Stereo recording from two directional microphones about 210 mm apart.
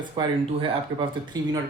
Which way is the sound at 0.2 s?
25° right (ahead or behind).